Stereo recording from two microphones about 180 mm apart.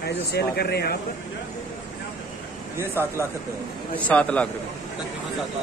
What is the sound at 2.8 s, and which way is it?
Speech, 15° right (ahead or behind).